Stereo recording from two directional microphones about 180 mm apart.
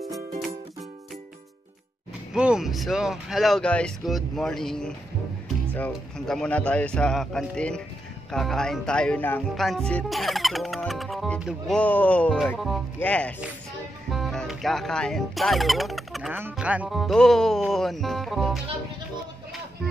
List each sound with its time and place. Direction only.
2.3 s speech: 5° right (ahead or behind)